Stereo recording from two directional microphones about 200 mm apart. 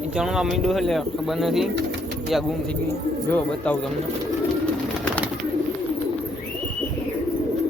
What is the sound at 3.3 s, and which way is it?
Speech, 5° left (ahead or behind).